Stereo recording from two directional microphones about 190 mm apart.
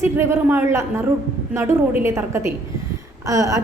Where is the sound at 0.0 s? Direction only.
15° right (ahead or behind).